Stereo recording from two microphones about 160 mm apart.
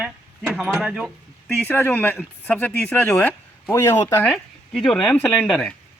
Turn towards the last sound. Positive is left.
turn(degrees=5)  # may be behind; listen again after turning